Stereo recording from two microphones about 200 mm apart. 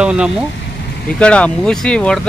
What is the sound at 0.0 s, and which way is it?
Speech, 5° right (ahead or behind).